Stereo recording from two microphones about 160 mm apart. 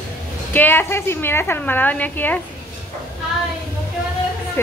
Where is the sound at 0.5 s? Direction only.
10° left (ahead or behind).